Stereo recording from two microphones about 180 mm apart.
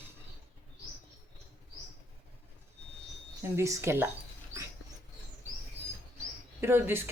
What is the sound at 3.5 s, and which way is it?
Speech, 15° right (ahead or behind).